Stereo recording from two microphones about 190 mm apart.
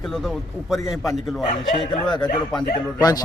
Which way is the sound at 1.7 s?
30° left (ahead or behind).